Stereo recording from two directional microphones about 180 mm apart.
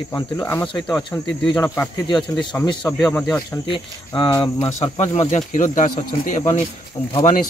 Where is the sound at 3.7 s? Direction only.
25° left (ahead or behind).